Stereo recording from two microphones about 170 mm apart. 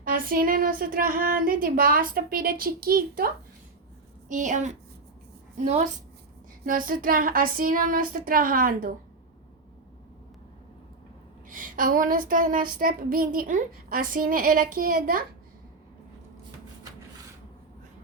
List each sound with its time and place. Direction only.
0.0 s speech: 55° right (ahead or behind)
4.3 s a woman's voice: 45° right (ahead or behind)
6.7 s speech: 55° right (ahead or behind)
11.4 s speech: 50° right (ahead or behind)